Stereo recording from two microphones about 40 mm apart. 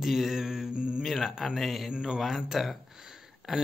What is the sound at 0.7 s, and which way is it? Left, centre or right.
Speech, right.